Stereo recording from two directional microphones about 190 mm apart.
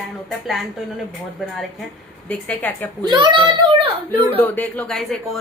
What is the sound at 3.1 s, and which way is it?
A child's voice, 25° right (ahead or behind).